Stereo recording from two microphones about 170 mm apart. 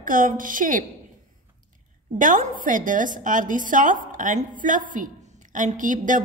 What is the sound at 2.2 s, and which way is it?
A woman's voice, 50° right (ahead or behind).